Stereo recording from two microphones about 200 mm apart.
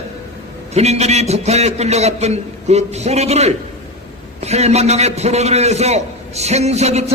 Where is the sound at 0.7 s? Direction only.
35° right (ahead or behind).